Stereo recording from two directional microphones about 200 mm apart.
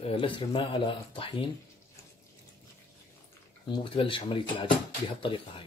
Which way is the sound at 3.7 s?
25° left (ahead or behind).